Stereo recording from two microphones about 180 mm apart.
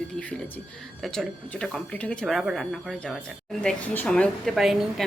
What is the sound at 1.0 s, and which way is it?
A woman's voice, 5° left (ahead or behind).